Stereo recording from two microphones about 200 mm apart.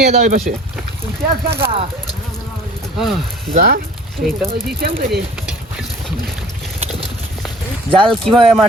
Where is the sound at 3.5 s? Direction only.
45° right (ahead or behind).